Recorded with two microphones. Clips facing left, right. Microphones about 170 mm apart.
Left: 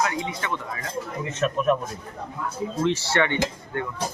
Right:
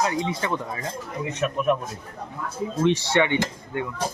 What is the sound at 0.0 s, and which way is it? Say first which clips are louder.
Speech: right 2 dB; 30° right (ahead or behind).